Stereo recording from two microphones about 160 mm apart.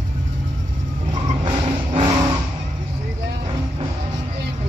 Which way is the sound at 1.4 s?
35° right (ahead or behind).